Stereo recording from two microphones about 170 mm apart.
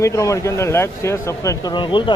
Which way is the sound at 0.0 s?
20° left (ahead or behind).